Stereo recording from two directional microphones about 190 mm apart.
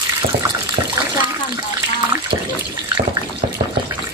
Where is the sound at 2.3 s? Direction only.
25° right (ahead or behind).